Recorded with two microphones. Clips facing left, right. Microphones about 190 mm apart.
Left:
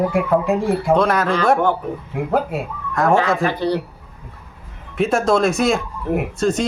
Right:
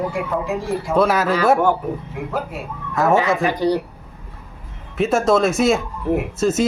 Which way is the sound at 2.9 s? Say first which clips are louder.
Even; centre (ahead or behind).